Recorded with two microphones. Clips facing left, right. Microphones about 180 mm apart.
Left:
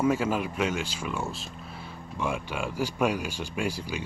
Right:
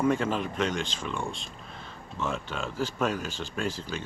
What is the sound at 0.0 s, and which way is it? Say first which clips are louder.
Speech: left 1 dB; 5° left (ahead or behind).